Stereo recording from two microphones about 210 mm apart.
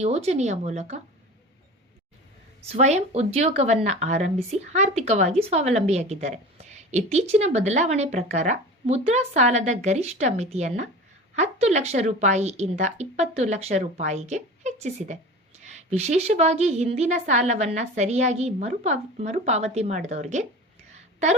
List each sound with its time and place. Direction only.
0.0 s a woman's voice: 30° right (ahead or behind)
2.6 s a woman's voice: 30° right (ahead or behind)
20.9 s a sound: 35° right (ahead or behind)